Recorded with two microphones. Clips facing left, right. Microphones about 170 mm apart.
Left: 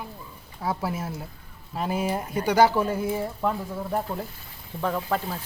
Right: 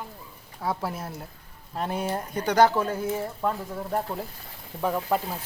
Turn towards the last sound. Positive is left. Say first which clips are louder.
# right 1 dB
turn(degrees=-10)  # may be behind; listen again after turning